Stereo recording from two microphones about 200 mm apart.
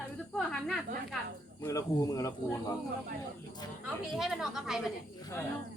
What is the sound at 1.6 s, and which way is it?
Speech, 15° left (ahead or behind).